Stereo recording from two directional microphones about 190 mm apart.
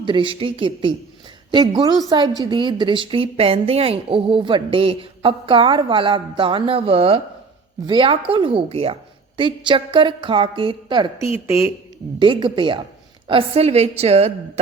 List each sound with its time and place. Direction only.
0.0 s speech: 25° right (ahead or behind)
11.4 s speech: 15° right (ahead or behind)
12.2 s a woman's voice: 25° right (ahead or behind)